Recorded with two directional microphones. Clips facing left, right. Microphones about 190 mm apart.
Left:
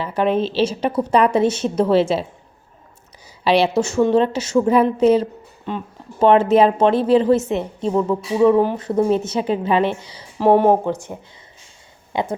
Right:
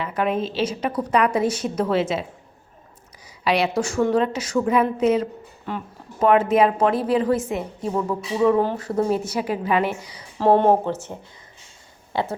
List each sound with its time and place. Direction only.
0.0 s a woman's voice: 30° left (ahead or behind)
3.4 s a woman's voice: 30° left (ahead or behind)
10.4 s speech: 10° left (ahead or behind)